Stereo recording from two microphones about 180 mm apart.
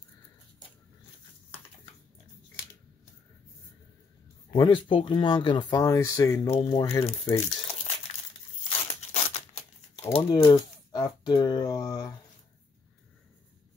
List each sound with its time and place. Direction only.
4.6 s speech: 25° left (ahead or behind)
6.5 s speech: 25° left (ahead or behind)
7.3 s crumpling: 35° left (ahead or behind)
8.6 s tearing: 30° left (ahead or behind)
10.1 s speech: 30° left (ahead or behind)